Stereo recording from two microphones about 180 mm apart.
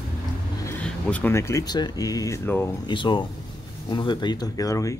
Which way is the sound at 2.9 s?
25° left (ahead or behind).